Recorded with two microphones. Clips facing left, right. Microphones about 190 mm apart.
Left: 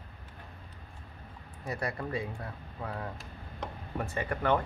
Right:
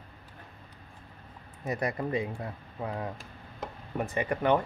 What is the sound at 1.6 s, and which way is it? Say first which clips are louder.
Speech: right 4 dB; 20° right (ahead or behind).